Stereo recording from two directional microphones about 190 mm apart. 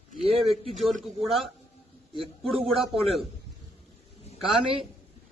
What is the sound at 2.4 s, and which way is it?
Speech, 30° right (ahead or behind).